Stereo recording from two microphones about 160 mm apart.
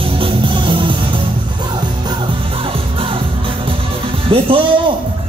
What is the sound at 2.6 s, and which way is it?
Music, 35° right (ahead or behind).